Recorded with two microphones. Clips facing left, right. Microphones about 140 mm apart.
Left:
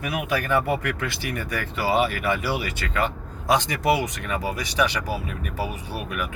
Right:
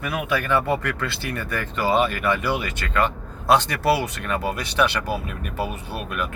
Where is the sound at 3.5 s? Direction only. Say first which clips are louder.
Right 3 dB; 65° right (ahead or behind).